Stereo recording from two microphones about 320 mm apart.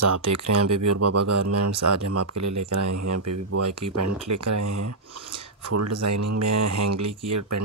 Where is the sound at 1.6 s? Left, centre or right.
Right.